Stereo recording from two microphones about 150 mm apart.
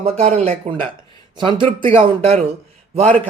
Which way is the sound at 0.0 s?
45° right (ahead or behind).